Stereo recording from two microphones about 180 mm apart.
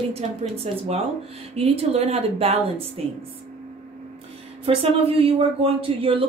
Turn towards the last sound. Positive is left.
turn(degrees=-30)  # may be behind; listen again after turning